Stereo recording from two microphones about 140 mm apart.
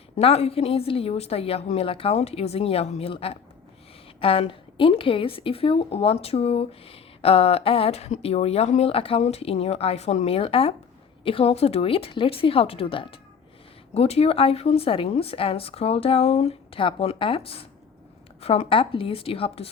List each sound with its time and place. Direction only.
0.2 s a woman's voice: 45° left (ahead or behind)